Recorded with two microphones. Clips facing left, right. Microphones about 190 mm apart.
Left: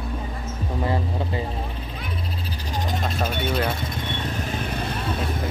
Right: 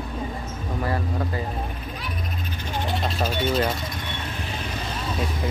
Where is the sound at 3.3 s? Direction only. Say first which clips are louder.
Right 2 dB; 55° left (ahead or behind).